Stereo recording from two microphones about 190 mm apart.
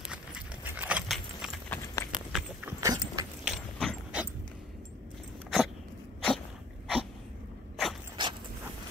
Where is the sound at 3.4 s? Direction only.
Centre (ahead or behind).